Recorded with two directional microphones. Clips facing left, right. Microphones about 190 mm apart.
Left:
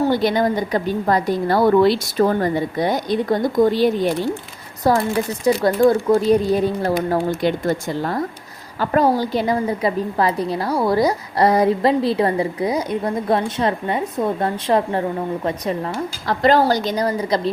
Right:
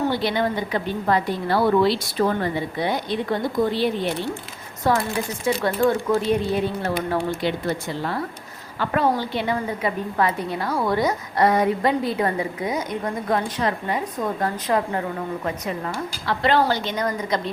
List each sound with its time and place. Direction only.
0.0 s a woman's voice: 45° left (ahead or behind)